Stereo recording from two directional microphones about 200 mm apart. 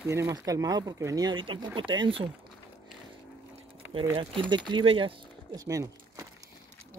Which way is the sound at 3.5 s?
25° right (ahead or behind).